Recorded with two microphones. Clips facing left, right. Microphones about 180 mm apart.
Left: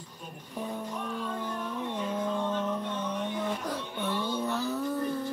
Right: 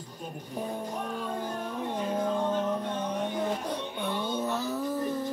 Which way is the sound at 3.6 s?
20° right (ahead or behind).